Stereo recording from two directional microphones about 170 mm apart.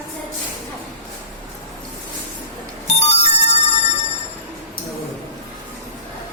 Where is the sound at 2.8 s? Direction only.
40° left (ahead or behind).